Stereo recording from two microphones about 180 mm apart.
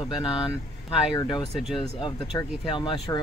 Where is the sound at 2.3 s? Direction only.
25° left (ahead or behind).